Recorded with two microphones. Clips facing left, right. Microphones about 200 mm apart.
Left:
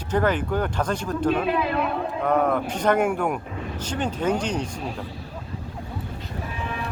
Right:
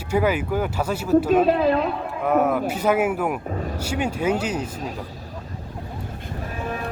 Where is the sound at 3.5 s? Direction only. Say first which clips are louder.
Right 5 dB; 45° right (ahead or behind).